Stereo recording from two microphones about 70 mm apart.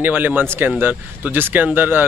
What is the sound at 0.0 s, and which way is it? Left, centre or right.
Speech, right.